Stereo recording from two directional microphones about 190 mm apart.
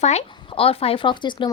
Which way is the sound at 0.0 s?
35° left (ahead or behind).